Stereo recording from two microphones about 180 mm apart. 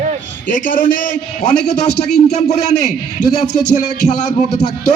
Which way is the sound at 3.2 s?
40° left (ahead or behind).